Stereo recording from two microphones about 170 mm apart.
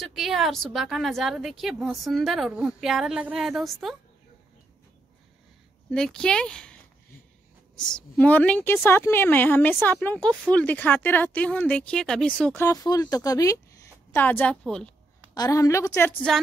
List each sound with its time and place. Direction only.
0.0 s a woman's voice: centre (ahead or behind)
5.9 s a woman's voice: 5° left (ahead or behind)
12.6 s a woman's voice: 20° left (ahead or behind); by 14.9 s 5° left (ahead or behind)
15.3 s a woman's voice: 20° left (ahead or behind)